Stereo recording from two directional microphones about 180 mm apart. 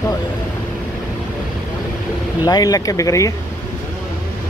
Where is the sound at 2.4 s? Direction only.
20° left (ahead or behind).